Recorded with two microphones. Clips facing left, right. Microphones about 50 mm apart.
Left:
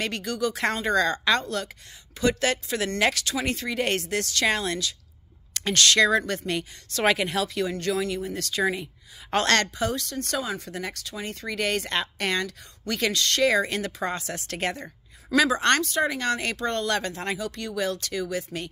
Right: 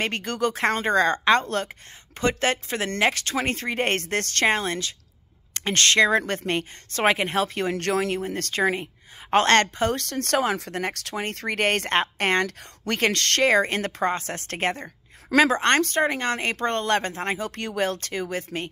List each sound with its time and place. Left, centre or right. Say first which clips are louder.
0.0 s speech: right 2 dB; right
4.5 s speech: right 3 dB; right
7.7 s speech: right 3 dB; right
8.2 s speech: right 2 dB; right
9.3 s speech: right 4 dB; right
10.7 s speech: right 5 dB; right